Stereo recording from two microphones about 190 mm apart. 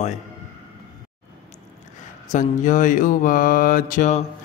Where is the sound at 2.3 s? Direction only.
40° left (ahead or behind).